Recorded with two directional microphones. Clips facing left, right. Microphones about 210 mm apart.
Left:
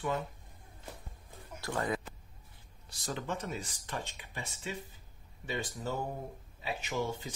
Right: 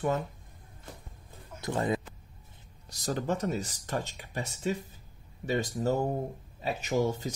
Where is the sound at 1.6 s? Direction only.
25° right (ahead or behind).